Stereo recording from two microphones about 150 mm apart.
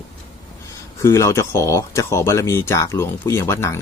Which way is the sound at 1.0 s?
20° left (ahead or behind).